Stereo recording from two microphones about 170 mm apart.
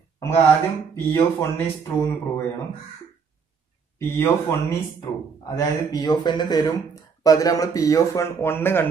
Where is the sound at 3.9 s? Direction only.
15° left (ahead or behind).